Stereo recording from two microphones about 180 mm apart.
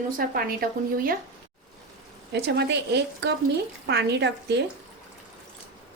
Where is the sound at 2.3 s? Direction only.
70° right (ahead or behind).